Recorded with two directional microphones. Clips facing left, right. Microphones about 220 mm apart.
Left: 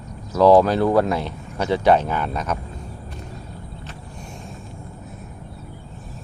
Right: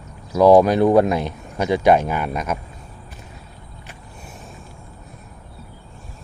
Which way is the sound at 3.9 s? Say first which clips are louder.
Left 3 dB; 5° right (ahead or behind).